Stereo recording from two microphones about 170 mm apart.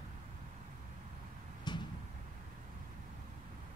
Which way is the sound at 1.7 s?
25° left (ahead or behind).